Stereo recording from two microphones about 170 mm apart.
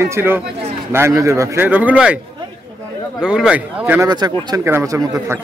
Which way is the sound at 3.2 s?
5° right (ahead or behind).